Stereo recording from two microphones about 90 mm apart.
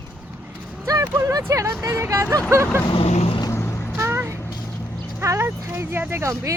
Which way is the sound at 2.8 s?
85° left.